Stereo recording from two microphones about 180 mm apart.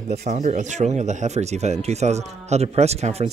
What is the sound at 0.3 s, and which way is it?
Speech, 40° right (ahead or behind).